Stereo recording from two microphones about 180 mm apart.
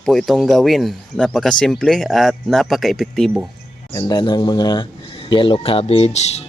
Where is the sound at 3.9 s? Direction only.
25° left (ahead or behind).